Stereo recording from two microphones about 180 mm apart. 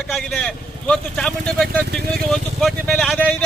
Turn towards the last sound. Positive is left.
turn(degrees=5)  # may be behind; listen again after turning